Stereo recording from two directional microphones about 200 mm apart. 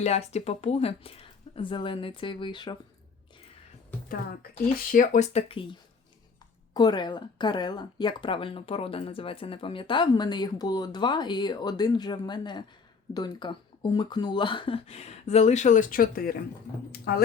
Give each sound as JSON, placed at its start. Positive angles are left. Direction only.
{"t": 0.0, "sound": "speech", "side_deg": 30}
{"t": 4.9, "sound": "speech", "side_deg": 40}
{"t": 6.7, "sound": "speech", "side_deg": 20}